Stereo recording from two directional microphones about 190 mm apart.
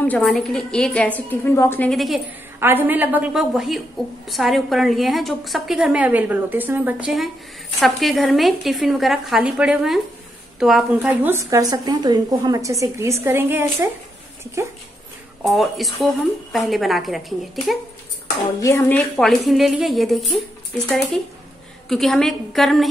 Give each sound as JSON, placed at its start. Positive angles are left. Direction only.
{"t": 0.0, "sound": "a woman's voice", "side_deg": 5}
{"t": 2.6, "sound": "a woman's voice", "side_deg": -10}
{"t": 15.4, "sound": "a woman's voice", "side_deg": 0}
{"t": 18.6, "sound": "a woman's voice", "side_deg": 15}